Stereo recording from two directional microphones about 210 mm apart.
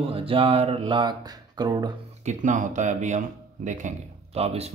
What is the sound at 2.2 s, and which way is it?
Speech, 35° right (ahead or behind).